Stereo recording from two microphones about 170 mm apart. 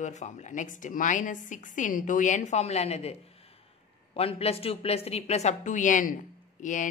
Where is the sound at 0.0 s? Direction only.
45° left (ahead or behind).